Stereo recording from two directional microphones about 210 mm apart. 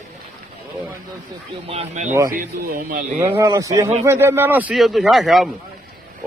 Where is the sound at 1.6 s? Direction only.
30° right (ahead or behind).